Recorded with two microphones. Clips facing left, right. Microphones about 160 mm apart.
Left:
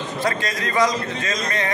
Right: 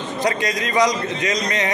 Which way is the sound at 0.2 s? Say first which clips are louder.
Right 3 dB; 15° right (ahead or behind).